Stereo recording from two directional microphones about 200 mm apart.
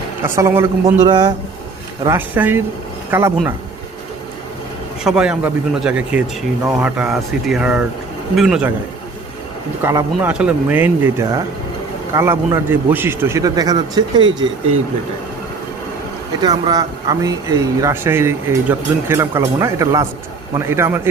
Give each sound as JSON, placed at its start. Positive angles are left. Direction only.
{"t": 0.3, "sound": "speech", "side_deg": -15}
{"t": 2.0, "sound": "speech", "side_deg": -10}
{"t": 5.0, "sound": "speech", "side_deg": -5}
{"t": 9.8, "sound": "speech", "side_deg": -10}
{"t": 16.4, "sound": "speech", "side_deg": -20}